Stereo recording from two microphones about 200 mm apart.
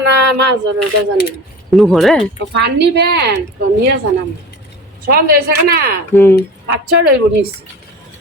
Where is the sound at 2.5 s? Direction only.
60° right (ahead or behind).